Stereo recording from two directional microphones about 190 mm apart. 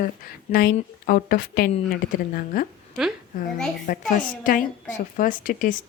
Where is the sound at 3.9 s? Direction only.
45° left (ahead or behind).